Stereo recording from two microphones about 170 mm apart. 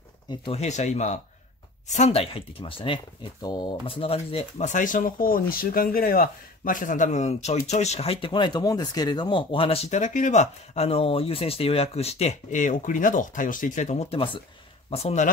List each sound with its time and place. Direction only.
0.3 s speech: 35° left (ahead or behind)